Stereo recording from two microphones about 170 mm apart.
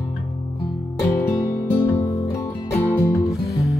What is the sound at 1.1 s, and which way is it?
Music, 15° left (ahead or behind).